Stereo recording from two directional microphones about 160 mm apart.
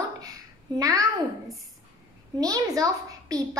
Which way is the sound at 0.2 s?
20° right (ahead or behind).